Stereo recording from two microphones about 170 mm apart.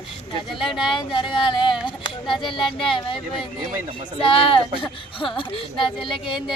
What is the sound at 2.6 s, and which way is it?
Speech, centre (ahead or behind).